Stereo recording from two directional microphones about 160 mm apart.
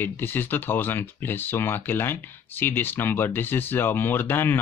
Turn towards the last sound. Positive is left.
turn(degrees=15)  # may be behind; listen again after turning